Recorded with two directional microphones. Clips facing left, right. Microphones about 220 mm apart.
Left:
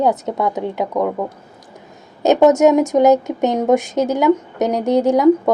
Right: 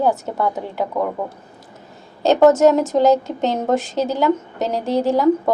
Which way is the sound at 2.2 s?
20° left (ahead or behind).